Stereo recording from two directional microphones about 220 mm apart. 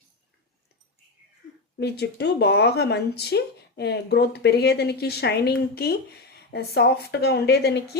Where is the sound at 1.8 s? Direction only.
50° left (ahead or behind).